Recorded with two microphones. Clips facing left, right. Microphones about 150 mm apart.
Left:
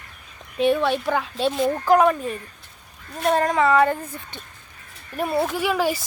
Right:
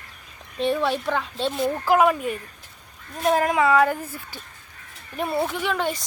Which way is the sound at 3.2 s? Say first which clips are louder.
Left 1 dB; 5° right (ahead or behind).